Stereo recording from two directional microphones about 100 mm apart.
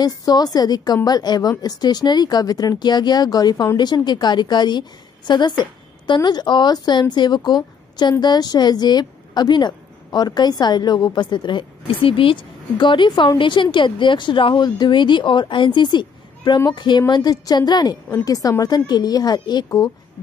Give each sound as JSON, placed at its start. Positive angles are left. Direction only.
{"t": 0.0, "sound": "a woman's voice", "side_deg": 40}